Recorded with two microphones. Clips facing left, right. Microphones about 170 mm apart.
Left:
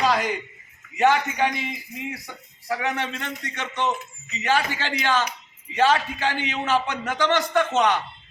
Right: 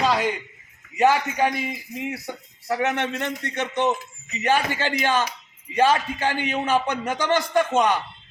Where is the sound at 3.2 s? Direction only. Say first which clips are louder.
Right 5 dB; 15° right (ahead or behind).